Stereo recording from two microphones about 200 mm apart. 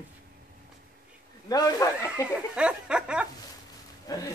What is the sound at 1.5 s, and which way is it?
Speech, 15° left (ahead or behind).